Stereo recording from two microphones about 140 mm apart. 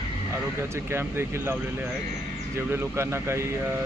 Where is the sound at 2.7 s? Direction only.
15° right (ahead or behind).